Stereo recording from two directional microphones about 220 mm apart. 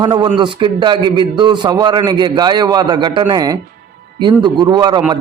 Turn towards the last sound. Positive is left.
turn(degrees=-20)  # may be behind; listen again after turning